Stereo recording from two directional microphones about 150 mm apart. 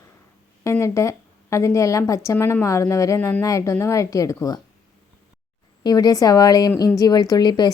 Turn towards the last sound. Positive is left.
turn(degrees=30)  # may be behind; listen again after turning